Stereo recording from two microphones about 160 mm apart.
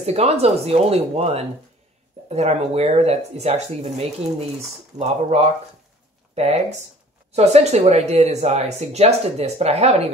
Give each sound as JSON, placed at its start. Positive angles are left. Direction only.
{"t": 0.0, "sound": "speech", "side_deg": -40}